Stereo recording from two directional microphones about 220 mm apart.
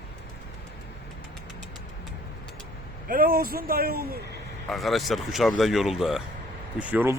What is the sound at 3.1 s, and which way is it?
A man's voice, 40° right (ahead or behind).